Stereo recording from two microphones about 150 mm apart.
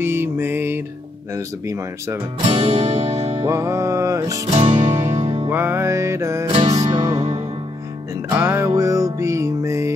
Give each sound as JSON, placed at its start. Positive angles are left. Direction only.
{"t": 0.0, "sound": "music", "side_deg": -15}
{"t": 2.4, "sound": "music", "side_deg": -35}
{"t": 3.3, "sound": "music", "side_deg": -20}
{"t": 4.5, "sound": "music", "side_deg": -30}
{"t": 5.1, "sound": "music", "side_deg": -40}
{"t": 5.5, "sound": "music", "side_deg": -15}
{"t": 6.5, "sound": "music", "side_deg": -40}
{"t": 6.9, "sound": "music", "side_deg": -25}
{"t": 7.2, "sound": "music", "side_deg": -45}
{"t": 8.3, "sound": "music", "side_deg": -15}